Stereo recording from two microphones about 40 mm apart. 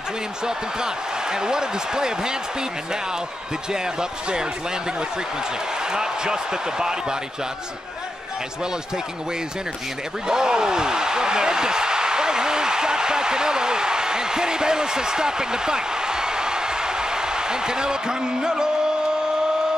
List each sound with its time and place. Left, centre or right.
0.5 s speech: centre
3.7 s speech: centre
5.9 s speech: centre
10.2 s speech: centre